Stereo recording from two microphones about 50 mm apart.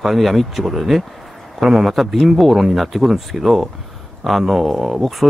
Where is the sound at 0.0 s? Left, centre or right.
Centre.